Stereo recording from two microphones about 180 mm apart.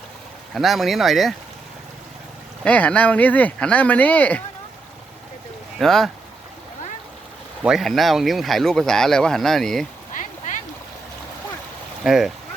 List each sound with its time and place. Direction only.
0.5 s speech: centre (ahead or behind)
2.6 s speech: 5° left (ahead or behind)
5.8 s speech: centre (ahead or behind)
7.6 s speech: centre (ahead or behind)
10.2 s a sound: 45° left (ahead or behind)
12.0 s speech: centre (ahead or behind)